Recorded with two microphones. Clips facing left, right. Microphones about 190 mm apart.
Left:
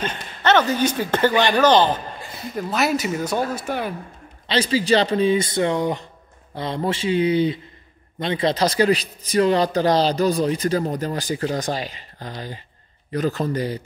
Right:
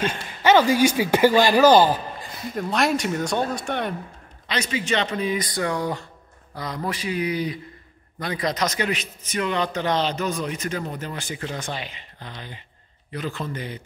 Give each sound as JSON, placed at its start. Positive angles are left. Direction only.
{"t": 0.0, "sound": "speech", "side_deg": -10}
{"t": 2.5, "sound": "speech", "side_deg": 5}
{"t": 4.5, "sound": "a man's voice", "side_deg": 30}